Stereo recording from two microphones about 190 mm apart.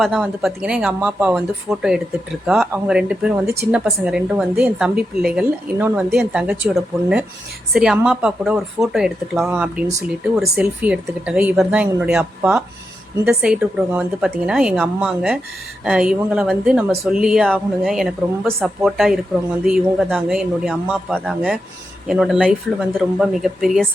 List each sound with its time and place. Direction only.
0.0 s speech: centre (ahead or behind)
3.4 s speech: 60° right (ahead or behind)
3.7 s speech: 5° right (ahead or behind)